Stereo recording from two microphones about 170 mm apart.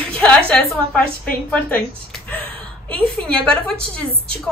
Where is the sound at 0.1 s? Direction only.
5° left (ahead or behind).